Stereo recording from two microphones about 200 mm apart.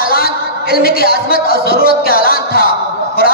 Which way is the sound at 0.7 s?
50° left (ahead or behind).